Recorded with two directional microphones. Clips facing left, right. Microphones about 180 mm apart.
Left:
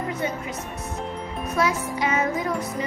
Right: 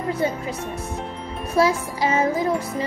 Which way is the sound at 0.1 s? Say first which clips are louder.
Right 4 dB; 30° right (ahead or behind).